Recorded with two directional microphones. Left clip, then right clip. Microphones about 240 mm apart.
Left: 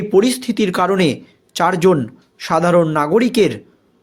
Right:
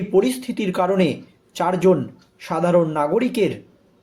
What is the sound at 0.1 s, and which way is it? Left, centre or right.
A man's voice, left.